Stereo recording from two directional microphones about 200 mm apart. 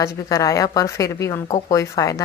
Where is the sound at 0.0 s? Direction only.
15° left (ahead or behind).